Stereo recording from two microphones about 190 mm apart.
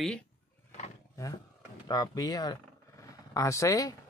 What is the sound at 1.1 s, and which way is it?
Speech, 15° left (ahead or behind).